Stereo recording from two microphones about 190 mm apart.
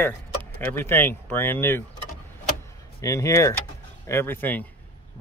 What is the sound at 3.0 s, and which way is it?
Speech, 15° left (ahead or behind).